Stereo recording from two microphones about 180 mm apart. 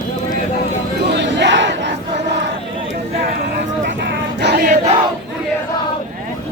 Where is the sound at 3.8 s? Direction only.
75° right (ahead or behind).